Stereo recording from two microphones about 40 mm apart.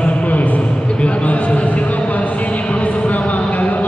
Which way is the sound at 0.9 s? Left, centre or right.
Left.